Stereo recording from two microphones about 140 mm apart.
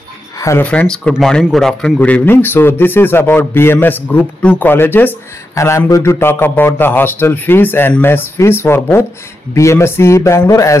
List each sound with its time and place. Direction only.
0.4 s speech: 20° left (ahead or behind)
0.7 s speech: 10° left (ahead or behind)